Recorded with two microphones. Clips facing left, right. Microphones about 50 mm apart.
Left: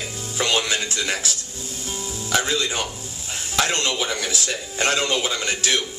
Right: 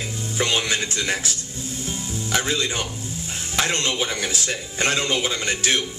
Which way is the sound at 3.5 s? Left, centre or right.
Right.